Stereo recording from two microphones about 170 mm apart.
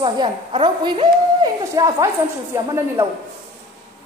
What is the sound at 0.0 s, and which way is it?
A woman's voice, 30° right (ahead or behind).